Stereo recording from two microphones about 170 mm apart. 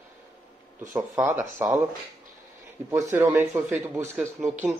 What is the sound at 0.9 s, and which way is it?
Speech, 15° right (ahead or behind).